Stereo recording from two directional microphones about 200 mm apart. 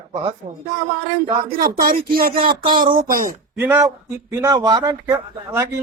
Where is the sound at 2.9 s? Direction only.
45° right (ahead or behind).